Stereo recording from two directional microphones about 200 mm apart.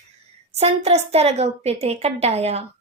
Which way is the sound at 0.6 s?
30° right (ahead or behind).